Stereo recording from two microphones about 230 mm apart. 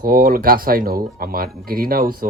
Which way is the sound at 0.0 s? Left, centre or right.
Right.